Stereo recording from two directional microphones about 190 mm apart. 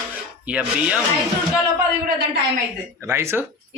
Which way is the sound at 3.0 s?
15° right (ahead or behind).